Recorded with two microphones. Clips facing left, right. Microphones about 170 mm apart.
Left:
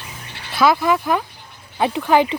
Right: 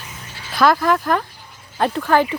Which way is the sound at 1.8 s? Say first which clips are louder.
Left 1 dB; 15° left (ahead or behind).